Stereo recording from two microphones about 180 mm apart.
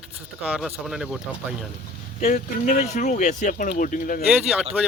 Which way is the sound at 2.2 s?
40° left (ahead or behind).